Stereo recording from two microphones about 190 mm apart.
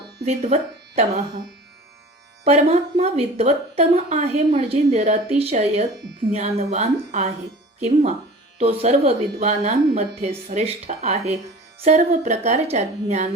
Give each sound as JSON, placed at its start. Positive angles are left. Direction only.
{"t": 0.3, "sound": "speech", "side_deg": -35}
{"t": 2.4, "sound": "speech", "side_deg": -35}
{"t": 8.5, "sound": "speech", "side_deg": -35}